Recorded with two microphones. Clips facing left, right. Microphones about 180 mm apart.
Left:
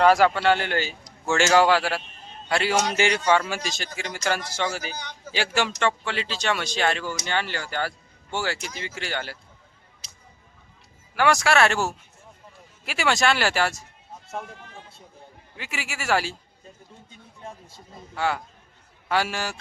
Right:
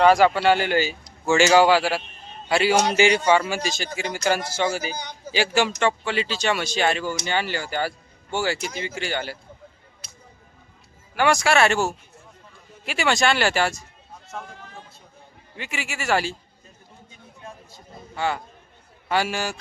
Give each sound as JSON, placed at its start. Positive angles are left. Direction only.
{"t": 0.0, "sound": "a man's voice", "side_deg": 0}
{"t": 4.9, "sound": "a sound", "side_deg": -40}
{"t": 5.3, "sound": "speech", "side_deg": 0}
{"t": 10.0, "sound": "music", "side_deg": -60}
{"t": 11.1, "sound": "speech", "side_deg": 0}
{"t": 15.5, "sound": "speech", "side_deg": 5}
{"t": 18.2, "sound": "speech", "side_deg": 5}